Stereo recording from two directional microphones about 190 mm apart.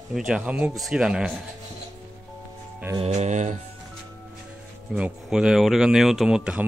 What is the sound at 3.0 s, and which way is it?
Speech, 35° right (ahead or behind).